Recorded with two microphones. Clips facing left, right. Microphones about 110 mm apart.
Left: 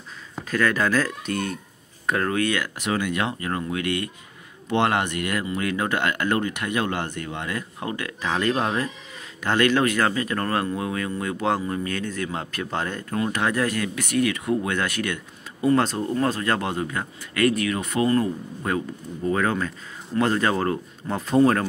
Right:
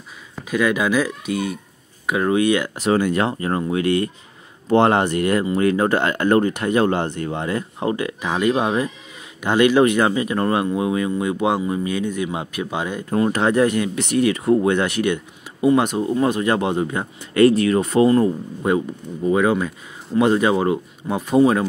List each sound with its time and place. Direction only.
0.5 s speech: 10° right (ahead or behind)
13.1 s speech: 30° right (ahead or behind); by 21.6 s 10° right (ahead or behind)